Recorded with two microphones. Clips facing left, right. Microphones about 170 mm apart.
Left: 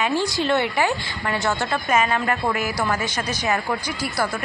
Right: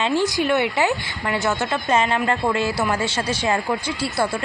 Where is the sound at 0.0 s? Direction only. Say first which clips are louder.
Right 2 dB; 20° right (ahead or behind).